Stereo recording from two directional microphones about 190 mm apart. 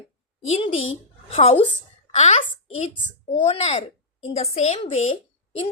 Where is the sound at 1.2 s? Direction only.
35° left (ahead or behind).